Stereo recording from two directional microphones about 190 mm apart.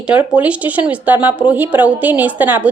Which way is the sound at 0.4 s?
5° right (ahead or behind).